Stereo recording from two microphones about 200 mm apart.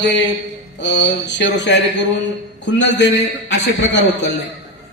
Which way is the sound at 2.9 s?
60° left (ahead or behind).